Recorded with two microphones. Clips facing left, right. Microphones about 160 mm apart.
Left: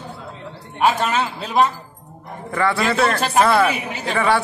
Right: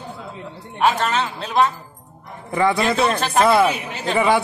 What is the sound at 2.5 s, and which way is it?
Speech, 15° right (ahead or behind).